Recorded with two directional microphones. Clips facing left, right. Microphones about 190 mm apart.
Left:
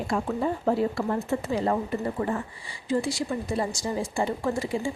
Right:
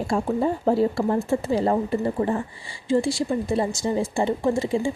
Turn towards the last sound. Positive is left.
turn(degrees=-25)  # may be behind; listen again after turning